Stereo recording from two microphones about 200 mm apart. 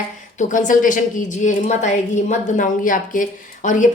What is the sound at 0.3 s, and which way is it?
A woman's voice, 40° left (ahead or behind).